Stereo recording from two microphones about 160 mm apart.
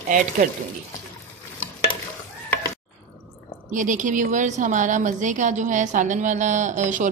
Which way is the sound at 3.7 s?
55° right (ahead or behind).